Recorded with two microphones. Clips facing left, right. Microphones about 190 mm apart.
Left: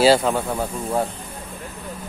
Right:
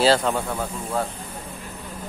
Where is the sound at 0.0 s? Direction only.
10° left (ahead or behind).